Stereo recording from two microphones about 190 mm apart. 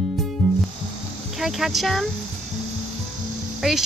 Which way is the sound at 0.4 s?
Centre (ahead or behind).